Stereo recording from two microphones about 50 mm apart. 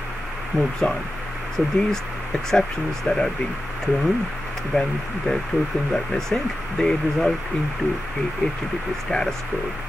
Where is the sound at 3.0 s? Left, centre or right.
Centre.